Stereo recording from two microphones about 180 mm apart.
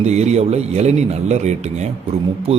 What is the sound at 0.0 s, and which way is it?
Speech, 40° right (ahead or behind).